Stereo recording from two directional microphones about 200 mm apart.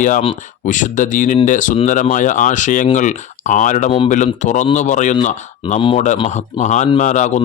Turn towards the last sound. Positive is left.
turn(degrees=35)  # may be behind; listen again after turning